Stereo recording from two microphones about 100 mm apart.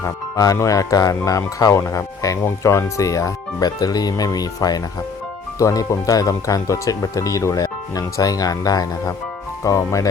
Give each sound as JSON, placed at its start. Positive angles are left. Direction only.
{"t": 0.0, "sound": "speech", "side_deg": 35}